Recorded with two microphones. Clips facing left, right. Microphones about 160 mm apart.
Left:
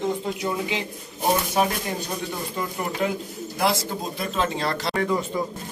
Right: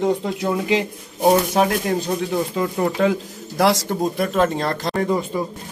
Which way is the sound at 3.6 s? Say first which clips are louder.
Right 7 dB; 90° right.